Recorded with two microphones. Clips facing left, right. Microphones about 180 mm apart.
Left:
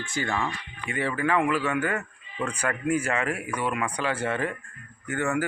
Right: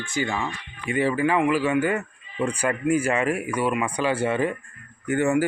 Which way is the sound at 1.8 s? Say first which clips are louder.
Right 4 dB; 10° right (ahead or behind).